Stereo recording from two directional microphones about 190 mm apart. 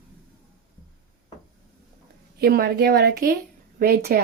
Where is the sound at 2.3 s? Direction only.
55° right (ahead or behind).